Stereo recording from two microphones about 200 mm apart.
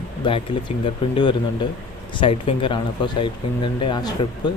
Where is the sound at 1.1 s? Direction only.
25° left (ahead or behind).